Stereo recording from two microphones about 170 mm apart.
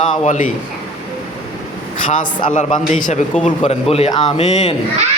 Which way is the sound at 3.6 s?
35° left (ahead or behind).